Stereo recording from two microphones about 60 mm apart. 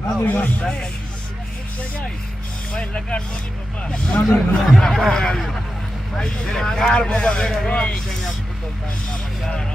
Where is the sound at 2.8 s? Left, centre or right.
Centre.